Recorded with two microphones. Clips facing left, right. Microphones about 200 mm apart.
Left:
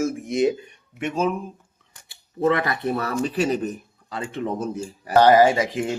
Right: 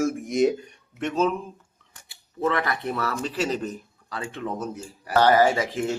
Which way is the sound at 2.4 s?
20° left (ahead or behind).